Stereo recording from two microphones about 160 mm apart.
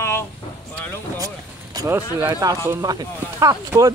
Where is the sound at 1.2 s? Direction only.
20° right (ahead or behind).